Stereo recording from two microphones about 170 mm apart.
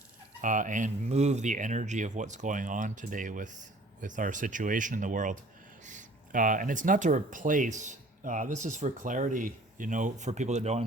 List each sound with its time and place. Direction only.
0.4 s speech: 50° right (ahead or behind)